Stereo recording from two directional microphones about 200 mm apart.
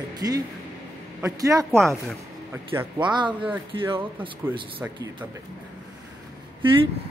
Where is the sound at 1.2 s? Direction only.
15° right (ahead or behind).